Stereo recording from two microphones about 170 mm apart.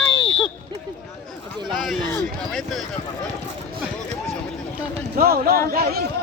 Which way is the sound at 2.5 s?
Centre (ahead or behind).